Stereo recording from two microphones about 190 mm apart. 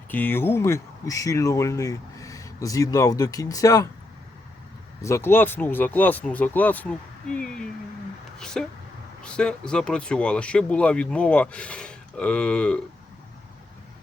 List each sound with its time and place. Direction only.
0.1 s speech: 10° left (ahead or behind)
5.0 s speech: 15° left (ahead or behind)